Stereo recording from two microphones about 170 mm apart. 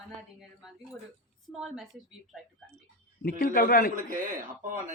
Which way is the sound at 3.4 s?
60° left (ahead or behind).